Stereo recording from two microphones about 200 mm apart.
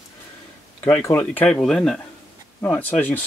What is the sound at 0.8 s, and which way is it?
Speech, 15° left (ahead or behind).